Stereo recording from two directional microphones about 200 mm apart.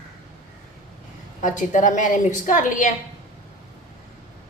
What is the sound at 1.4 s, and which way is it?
A woman's voice, 40° left (ahead or behind).